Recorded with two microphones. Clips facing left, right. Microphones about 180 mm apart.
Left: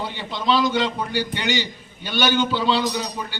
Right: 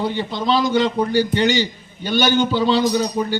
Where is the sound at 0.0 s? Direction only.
45° right (ahead or behind).